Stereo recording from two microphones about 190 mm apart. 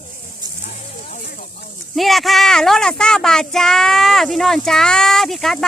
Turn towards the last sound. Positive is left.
turn(degrees=0)  # may be behind; listen again after turning